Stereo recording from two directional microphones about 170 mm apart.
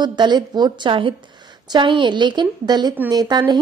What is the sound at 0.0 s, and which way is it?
Speech, 25° right (ahead or behind).